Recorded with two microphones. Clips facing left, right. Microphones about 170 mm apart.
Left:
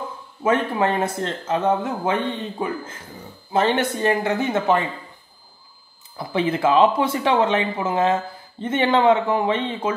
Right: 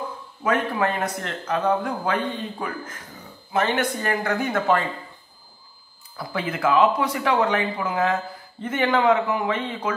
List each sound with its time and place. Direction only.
0.4 s speech: 25° left (ahead or behind)
6.1 s speech: 25° left (ahead or behind)